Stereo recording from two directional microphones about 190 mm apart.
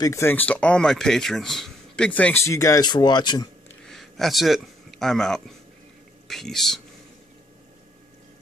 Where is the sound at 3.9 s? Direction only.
Centre (ahead or behind).